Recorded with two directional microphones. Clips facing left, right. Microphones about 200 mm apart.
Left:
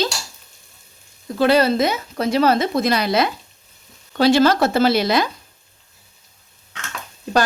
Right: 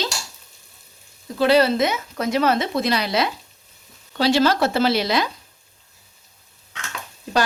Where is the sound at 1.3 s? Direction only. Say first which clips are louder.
Left 1 dB; 50° left (ahead or behind).